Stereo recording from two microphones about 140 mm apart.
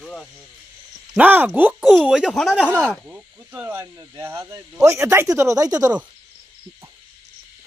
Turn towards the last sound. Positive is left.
turn(degrees=-25)  # may be behind; listen again after turning